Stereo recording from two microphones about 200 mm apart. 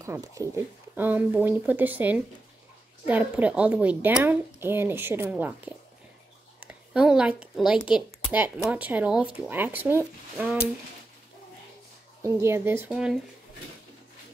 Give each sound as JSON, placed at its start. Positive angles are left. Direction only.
{"t": 0.0, "sound": "a woman's voice", "side_deg": -15}
{"t": 12.2, "sound": "a woman's voice", "side_deg": -15}